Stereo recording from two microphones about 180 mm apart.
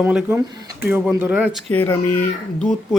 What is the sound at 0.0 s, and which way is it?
A man's voice, 5° right (ahead or behind).